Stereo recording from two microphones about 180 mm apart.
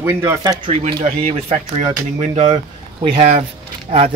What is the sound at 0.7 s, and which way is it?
Speech, 35° right (ahead or behind).